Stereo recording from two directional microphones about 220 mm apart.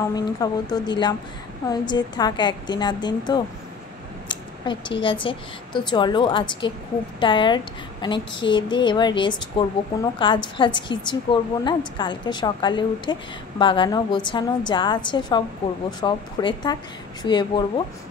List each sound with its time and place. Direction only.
0.0 s a woman's voice: 15° left (ahead or behind)
4.3 s a sound: 20° left (ahead or behind)
5.0 s a woman's voice: 25° left (ahead or behind)